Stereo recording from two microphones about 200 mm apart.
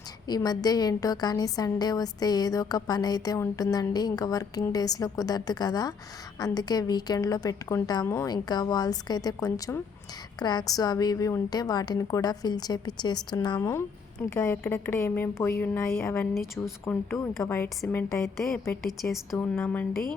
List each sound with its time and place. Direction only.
0.3 s a woman's voice: 20° left (ahead or behind)